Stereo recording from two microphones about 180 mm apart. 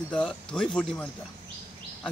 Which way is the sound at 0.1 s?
5° left (ahead or behind).